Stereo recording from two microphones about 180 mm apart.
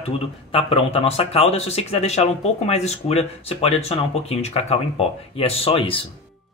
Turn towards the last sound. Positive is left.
turn(degrees=30)  # may be behind; listen again after turning